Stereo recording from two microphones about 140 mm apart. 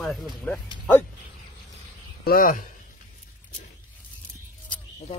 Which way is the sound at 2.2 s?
85° left.